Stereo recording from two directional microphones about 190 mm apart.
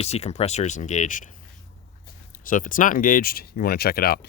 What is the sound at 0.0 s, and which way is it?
Speech, 35° left (ahead or behind).